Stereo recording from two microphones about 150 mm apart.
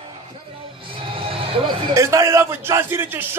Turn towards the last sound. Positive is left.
turn(degrees=-15)  # may be behind; listen again after turning